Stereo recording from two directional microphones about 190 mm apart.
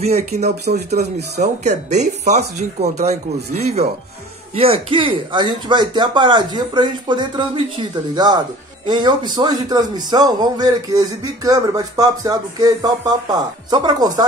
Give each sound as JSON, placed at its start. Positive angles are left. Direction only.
{"t": 0.0, "sound": "speech", "side_deg": -35}
{"t": 8.8, "sound": "speech", "side_deg": -25}